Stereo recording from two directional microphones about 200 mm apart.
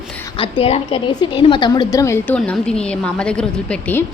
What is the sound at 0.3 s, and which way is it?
A woman's voice, 25° left (ahead or behind).